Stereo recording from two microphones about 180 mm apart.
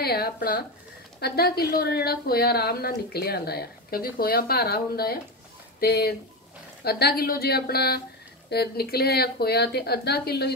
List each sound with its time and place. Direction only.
0.0 s a woman's voice: 60° left (ahead or behind)